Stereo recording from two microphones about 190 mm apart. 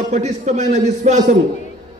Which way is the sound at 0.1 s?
40° right (ahead or behind).